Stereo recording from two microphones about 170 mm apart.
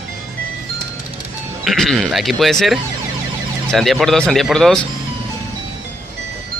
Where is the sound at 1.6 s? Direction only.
Centre (ahead or behind).